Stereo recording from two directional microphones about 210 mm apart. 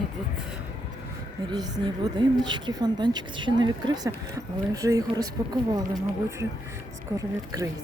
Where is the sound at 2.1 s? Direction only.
20° right (ahead or behind).